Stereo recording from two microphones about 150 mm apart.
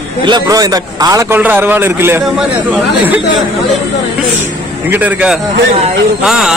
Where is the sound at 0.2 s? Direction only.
25° right (ahead or behind).